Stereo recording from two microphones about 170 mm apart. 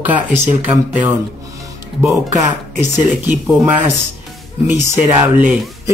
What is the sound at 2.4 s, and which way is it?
Speech, 15° right (ahead or behind).